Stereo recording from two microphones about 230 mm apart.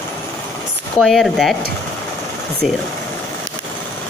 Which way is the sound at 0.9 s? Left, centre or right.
Centre.